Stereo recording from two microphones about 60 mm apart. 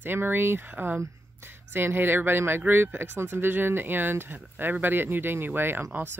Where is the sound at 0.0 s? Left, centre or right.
Right.